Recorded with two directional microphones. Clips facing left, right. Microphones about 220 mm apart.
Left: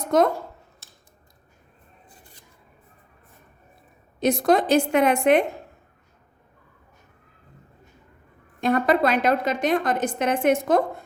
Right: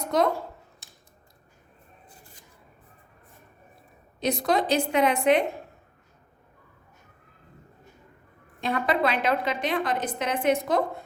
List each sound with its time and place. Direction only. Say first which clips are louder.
4.2 s a woman's voice: left 5 dB; 50° left (ahead or behind)
8.6 s a woman's voice: left 5 dB; 45° left (ahead or behind)